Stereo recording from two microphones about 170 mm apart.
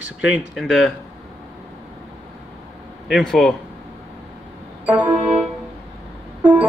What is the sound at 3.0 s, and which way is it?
Speech, centre (ahead or behind).